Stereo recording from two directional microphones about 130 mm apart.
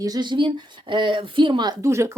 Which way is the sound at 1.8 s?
20° right (ahead or behind).